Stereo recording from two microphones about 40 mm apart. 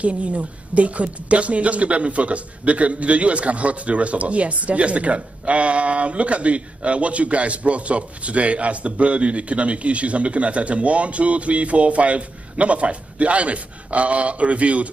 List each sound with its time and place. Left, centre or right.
0.0 s speech: right